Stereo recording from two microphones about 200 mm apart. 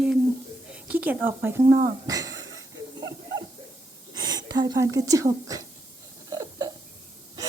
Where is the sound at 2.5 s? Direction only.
85° right.